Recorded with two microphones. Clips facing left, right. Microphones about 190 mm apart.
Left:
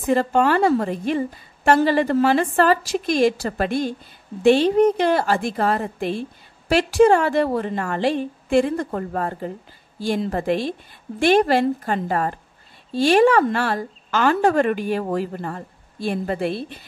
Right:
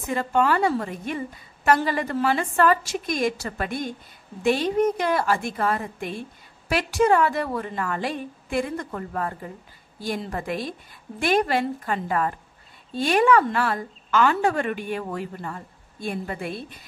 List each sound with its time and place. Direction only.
0.0 s a woman's voice: 30° left (ahead or behind)